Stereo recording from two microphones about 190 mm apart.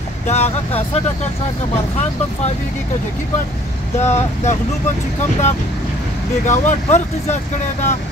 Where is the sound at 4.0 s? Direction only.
35° left (ahead or behind).